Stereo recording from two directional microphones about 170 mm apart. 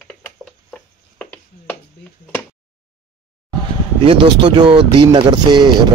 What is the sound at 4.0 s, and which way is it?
Speech, 30° right (ahead or behind).